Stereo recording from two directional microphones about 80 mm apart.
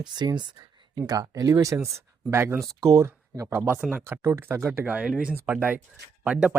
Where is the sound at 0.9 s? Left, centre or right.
Right.